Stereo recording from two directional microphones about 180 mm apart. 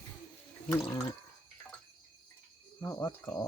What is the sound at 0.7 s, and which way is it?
Speech, 15° left (ahead or behind).